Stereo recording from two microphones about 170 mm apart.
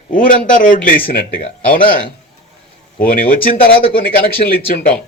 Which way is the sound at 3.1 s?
55° left (ahead or behind).